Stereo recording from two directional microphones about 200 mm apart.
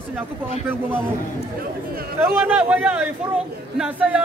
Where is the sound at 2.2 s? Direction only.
10° right (ahead or behind).